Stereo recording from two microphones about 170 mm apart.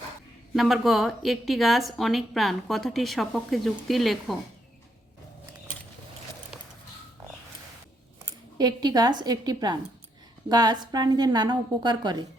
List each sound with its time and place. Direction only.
0.5 s a woman's voice: centre (ahead or behind)
8.5 s a woman's voice: 25° right (ahead or behind)